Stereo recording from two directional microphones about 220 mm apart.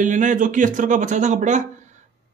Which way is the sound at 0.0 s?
35° right (ahead or behind).